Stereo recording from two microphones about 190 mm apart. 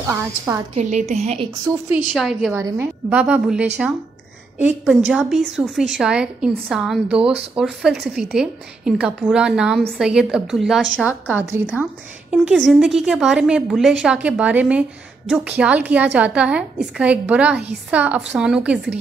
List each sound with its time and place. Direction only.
0.0 s a woman's voice: 15° right (ahead or behind)
0.7 s a woman's voice: 35° right (ahead or behind)
2.1 s a woman's voice: centre (ahead or behind)